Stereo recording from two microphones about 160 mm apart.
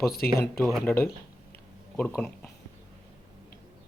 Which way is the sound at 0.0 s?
70° left (ahead or behind).